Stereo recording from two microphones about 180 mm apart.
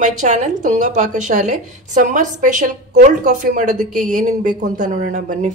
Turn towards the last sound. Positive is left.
turn(degrees=-45)  # may be behind; listen again after turning